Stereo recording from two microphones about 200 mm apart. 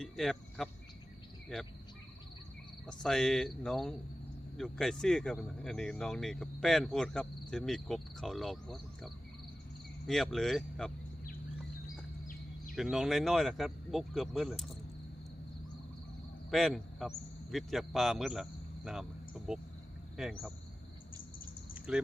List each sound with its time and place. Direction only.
0.0 s speech: centre (ahead or behind)
2.8 s speech: 5° left (ahead or behind)
12.7 s speech: centre (ahead or behind)
16.5 s speech: centre (ahead or behind)
21.8 s a sound: 5° right (ahead or behind)